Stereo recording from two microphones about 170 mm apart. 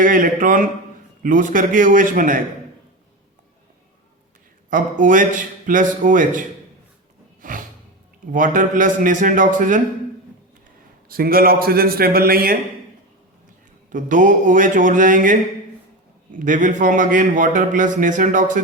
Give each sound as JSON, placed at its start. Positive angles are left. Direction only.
{"t": 0.0, "sound": "a man's voice", "side_deg": -50}
{"t": 4.7, "sound": "a man's voice", "side_deg": -50}
{"t": 7.4, "sound": "music", "side_deg": -50}
{"t": 8.3, "sound": "a man's voice", "side_deg": -50}
{"t": 11.1, "sound": "a man's voice", "side_deg": -60}
{"t": 13.9, "sound": "a man's voice", "side_deg": -50}
{"t": 16.4, "sound": "a man's voice", "side_deg": -50}